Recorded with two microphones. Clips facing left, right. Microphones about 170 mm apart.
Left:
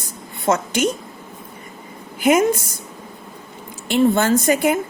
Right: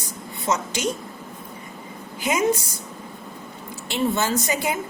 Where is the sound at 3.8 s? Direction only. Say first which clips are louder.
Left 7 dB; 55° left (ahead or behind).